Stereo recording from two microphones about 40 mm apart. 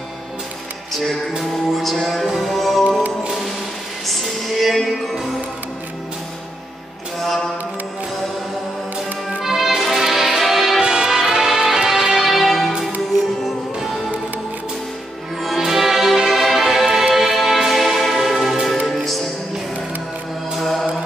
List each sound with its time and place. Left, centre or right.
1.8 s music: centre
4.1 s music: centre
7.2 s a sound: centre
9.4 s music: centre
10.8 s music: centre
13.7 s music: centre
15.6 s music: centre